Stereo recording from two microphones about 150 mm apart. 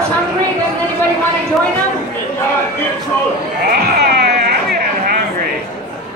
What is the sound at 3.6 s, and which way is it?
Sheep, 90° right.